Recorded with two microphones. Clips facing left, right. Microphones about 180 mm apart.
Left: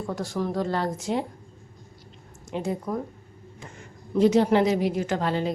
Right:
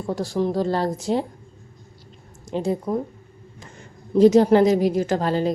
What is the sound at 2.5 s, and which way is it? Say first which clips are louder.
Speech: right 5 dB; 30° right (ahead or behind).